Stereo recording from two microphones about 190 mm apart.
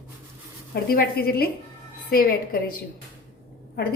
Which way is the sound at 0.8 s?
55° left (ahead or behind).